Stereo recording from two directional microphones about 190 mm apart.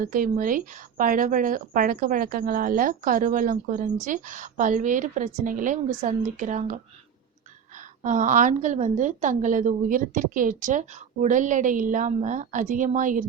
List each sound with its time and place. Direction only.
0.0 s a woman's voice: 45° right (ahead or behind)
8.0 s a woman's voice: 40° right (ahead or behind)